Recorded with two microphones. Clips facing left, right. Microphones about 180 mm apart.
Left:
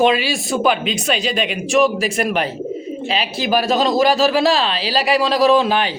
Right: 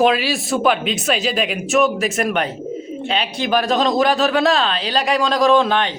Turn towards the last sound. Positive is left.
turn(degrees=5)  # may be behind; listen again after turning